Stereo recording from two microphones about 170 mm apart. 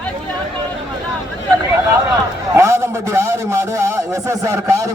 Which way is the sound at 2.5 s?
15° right (ahead or behind).